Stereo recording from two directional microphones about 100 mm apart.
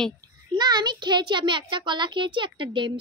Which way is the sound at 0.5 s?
45° right (ahead or behind).